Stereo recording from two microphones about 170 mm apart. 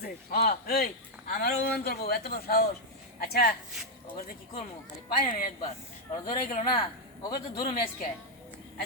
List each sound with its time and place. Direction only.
0.0 s speech: 60° left (ahead or behind)
5.0 s speech: 55° left (ahead or behind)
6.7 s a man's voice: 25° left (ahead or behind)